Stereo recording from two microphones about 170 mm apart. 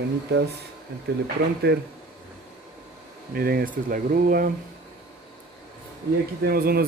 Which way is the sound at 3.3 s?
60° right (ahead or behind).